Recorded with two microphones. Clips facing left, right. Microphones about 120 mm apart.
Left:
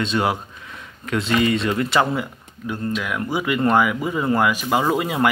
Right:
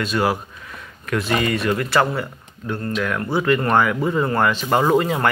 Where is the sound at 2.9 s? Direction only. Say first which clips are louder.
Right 5 dB; 10° left (ahead or behind).